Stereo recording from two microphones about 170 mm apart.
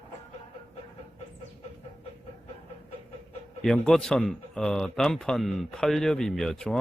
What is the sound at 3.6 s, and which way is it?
A man's voice, 5° left (ahead or behind).